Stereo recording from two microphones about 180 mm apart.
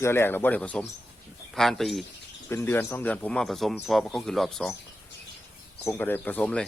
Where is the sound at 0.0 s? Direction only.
15° left (ahead or behind).